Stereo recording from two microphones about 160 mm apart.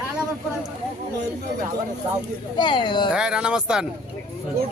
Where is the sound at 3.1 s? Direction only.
5° right (ahead or behind).